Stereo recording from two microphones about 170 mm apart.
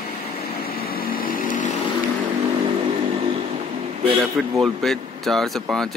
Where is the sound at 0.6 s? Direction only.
60° left (ahead or behind).